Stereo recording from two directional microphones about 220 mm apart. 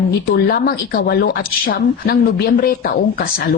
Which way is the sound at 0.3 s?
45° left (ahead or behind).